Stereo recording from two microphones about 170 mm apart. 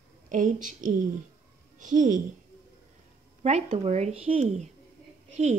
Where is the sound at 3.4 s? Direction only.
35° right (ahead or behind).